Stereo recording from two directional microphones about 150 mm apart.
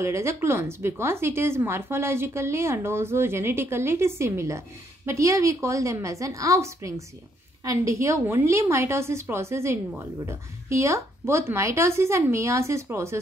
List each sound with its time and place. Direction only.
0.0 s speech: 20° right (ahead or behind)